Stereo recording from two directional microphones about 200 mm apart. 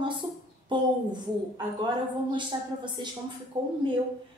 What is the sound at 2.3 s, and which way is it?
A woman's voice, 20° right (ahead or behind).